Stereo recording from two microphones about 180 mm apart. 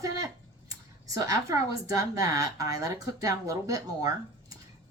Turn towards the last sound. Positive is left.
turn(degrees=-20)  # may be behind; listen again after turning